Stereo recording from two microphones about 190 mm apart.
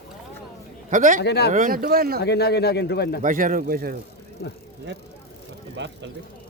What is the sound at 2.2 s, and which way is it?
Speech, 60° left (ahead or behind).